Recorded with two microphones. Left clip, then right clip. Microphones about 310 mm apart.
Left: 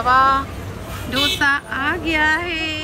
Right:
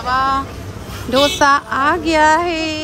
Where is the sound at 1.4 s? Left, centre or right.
Right.